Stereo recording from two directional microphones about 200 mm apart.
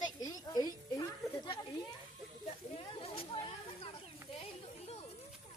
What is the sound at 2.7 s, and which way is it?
Snake, 30° left (ahead or behind).